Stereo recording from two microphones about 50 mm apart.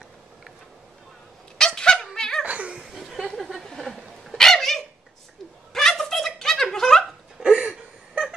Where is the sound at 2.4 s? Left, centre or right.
Right.